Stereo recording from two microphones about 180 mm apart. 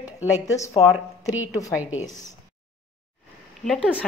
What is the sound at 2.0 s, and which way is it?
Speech, 20° left (ahead or behind).